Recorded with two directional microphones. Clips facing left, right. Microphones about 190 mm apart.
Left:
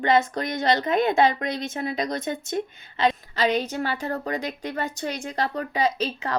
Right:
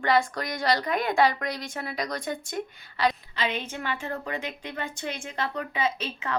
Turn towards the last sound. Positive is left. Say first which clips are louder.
# left 4 dB
turn(degrees=35)  # may be behind; listen again after turning